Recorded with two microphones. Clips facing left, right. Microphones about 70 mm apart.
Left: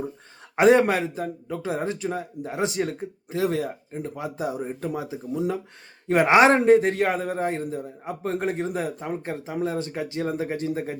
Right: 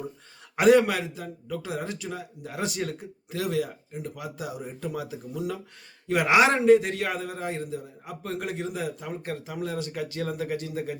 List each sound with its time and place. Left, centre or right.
0.5 s a man's voice: left